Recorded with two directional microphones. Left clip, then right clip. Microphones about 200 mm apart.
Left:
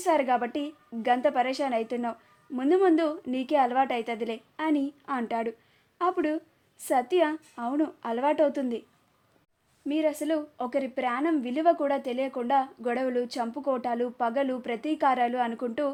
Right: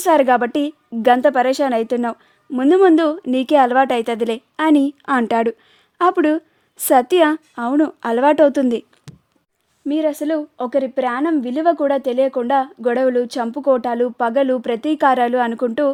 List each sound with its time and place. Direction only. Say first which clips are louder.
0.0 s a woman's voice: right 11 dB; 55° right (ahead or behind)
9.8 s a woman's voice: right 8 dB; 50° right (ahead or behind)